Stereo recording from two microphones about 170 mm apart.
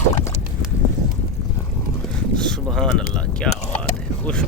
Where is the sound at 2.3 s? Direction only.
5° left (ahead or behind).